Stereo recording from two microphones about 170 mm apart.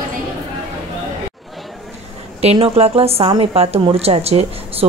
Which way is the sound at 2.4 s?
35° right (ahead or behind).